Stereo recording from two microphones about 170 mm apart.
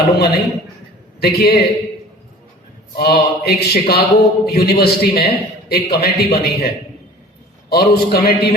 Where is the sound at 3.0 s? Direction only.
65° left (ahead or behind).